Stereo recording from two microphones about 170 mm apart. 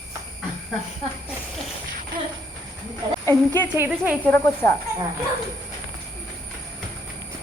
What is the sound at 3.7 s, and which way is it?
Speech, 10° right (ahead or behind).